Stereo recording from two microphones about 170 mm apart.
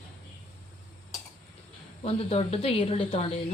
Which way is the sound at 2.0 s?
35° left (ahead or behind).